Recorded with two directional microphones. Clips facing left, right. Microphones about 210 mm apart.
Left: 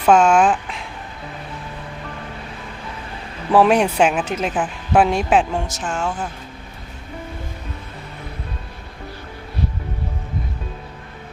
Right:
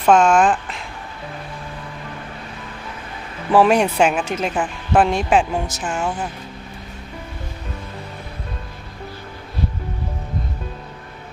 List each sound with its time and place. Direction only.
0.0 s speech: 5° left (ahead or behind)
3.5 s speech: centre (ahead or behind)